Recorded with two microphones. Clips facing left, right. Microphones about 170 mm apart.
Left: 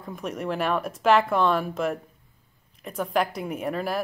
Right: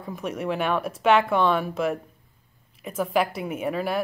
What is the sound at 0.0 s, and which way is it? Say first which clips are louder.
Speech: right 2 dB; centre (ahead or behind).